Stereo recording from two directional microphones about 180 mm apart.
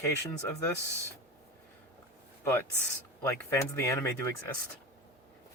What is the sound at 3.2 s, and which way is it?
Speech, 15° left (ahead or behind).